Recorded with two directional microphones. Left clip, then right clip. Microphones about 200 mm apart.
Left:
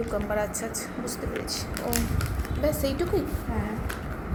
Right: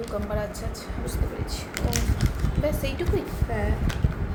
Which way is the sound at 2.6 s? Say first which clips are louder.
Left 2 dB; 15° left (ahead or behind).